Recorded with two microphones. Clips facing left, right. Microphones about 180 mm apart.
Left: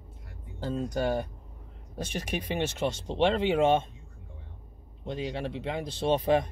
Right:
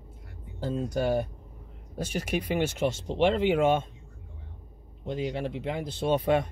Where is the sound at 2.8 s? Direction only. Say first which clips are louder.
Left 1 dB; 10° right (ahead or behind).